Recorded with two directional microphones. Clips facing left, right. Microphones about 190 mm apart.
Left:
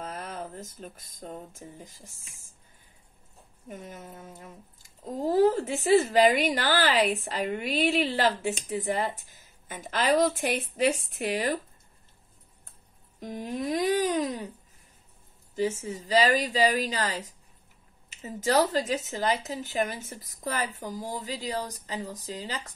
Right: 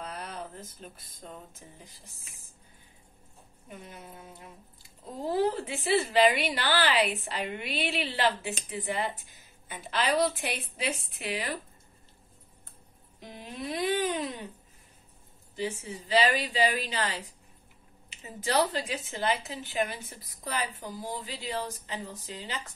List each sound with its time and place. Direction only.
0.0 s speech: 45° left (ahead or behind)
3.6 s speech: 45° left (ahead or behind)
13.2 s speech: 45° left (ahead or behind)
15.5 s a woman's voice: 45° left (ahead or behind)